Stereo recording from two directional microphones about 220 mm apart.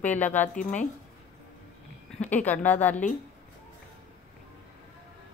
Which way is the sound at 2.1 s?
5° left (ahead or behind).